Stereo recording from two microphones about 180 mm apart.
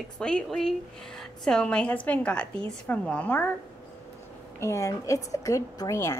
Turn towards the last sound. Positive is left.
turn(degrees=15)  # may be behind; listen again after turning